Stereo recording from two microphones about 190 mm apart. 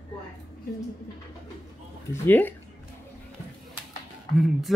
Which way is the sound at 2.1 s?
10° left (ahead or behind).